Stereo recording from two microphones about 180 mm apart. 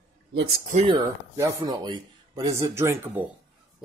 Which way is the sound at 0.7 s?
35° right (ahead or behind).